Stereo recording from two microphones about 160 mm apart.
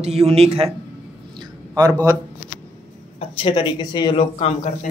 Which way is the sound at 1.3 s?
25° right (ahead or behind).